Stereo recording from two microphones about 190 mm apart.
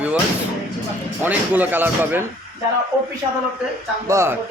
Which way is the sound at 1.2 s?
10° right (ahead or behind).